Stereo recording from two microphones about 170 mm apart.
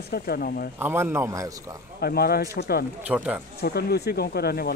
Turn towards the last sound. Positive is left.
turn(degrees=70)  # may be behind; listen again after turning